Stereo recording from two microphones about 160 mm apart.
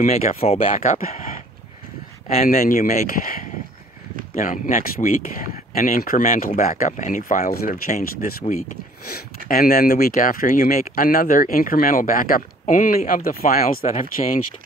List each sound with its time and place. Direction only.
0.4 s speech: 35° left (ahead or behind)
1.0 s speech: 55° left (ahead or behind)
13.8 s speech: 55° left (ahead or behind)